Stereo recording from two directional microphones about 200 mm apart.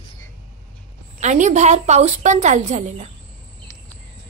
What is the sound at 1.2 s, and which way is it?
A woman's voice, 35° right (ahead or behind).